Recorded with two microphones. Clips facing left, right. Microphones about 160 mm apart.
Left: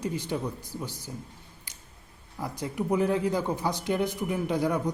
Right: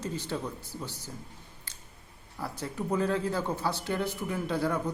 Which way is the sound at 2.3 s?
15° left (ahead or behind).